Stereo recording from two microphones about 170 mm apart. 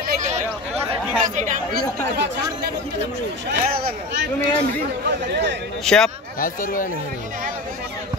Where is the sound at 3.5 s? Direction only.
90° right.